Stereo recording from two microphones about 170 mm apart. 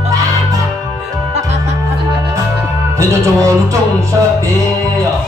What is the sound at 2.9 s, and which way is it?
Music, 15° right (ahead or behind).